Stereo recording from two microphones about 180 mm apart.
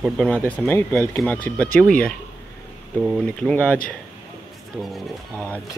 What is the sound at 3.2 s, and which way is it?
Speech, 5° left (ahead or behind).